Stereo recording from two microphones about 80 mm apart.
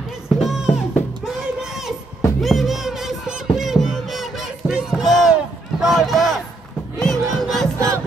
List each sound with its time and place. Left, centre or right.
0.4 s music: centre
2.4 s a sound: centre
7.0 s battle cry: centre